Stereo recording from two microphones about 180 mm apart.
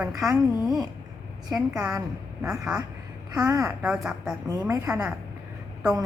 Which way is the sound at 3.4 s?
20° right (ahead or behind).